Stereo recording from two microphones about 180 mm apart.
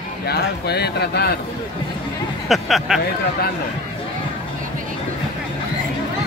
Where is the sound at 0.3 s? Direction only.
65° left (ahead or behind).